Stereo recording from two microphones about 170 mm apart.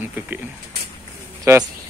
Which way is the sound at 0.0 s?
10° right (ahead or behind).